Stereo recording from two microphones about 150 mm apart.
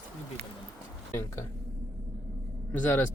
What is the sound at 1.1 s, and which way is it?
Speech, 15° left (ahead or behind).